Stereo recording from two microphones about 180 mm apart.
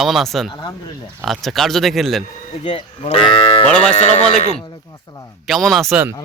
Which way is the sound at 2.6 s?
35° left (ahead or behind).